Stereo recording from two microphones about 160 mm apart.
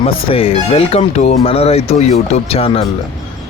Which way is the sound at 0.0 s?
35° left (ahead or behind).